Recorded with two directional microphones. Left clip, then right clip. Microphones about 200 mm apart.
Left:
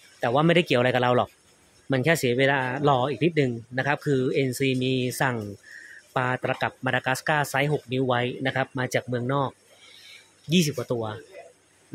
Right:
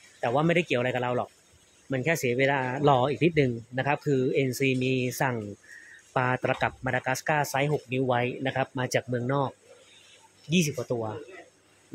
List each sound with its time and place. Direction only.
0.2 s speech: 20° left (ahead or behind)
1.9 s speech: 20° left (ahead or behind); by 6.7 s centre (ahead or behind)
6.8 s speech: 10° left (ahead or behind)
10.5 s speech: 15° left (ahead or behind)